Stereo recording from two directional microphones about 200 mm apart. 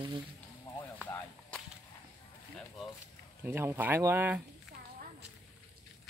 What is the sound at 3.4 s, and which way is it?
Speech, 10° right (ahead or behind).